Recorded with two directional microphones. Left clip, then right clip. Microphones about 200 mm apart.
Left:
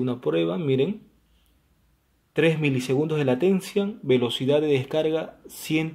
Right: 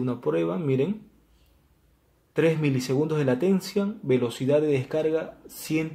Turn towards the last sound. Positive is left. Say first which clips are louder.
# left 2 dB
turn(degrees=25)  # may be behind; listen again after turning